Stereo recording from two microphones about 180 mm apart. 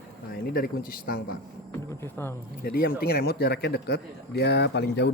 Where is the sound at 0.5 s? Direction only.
55° left (ahead or behind).